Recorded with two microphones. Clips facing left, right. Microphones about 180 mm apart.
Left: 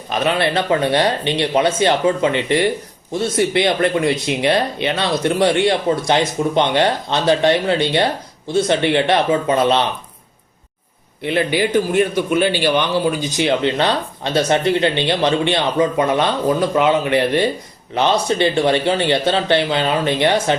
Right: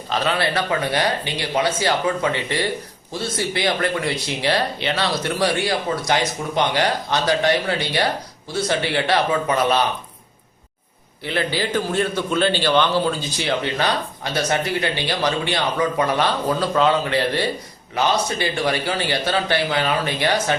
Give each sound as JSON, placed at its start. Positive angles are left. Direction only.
{"t": 0.1, "sound": "a man's voice", "side_deg": 20}
{"t": 11.2, "sound": "a man's voice", "side_deg": 20}